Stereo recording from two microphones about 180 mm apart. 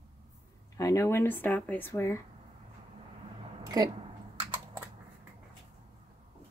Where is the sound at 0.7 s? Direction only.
15° left (ahead or behind).